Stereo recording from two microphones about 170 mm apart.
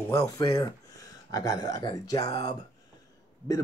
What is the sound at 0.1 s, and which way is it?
Speech, 20° left (ahead or behind).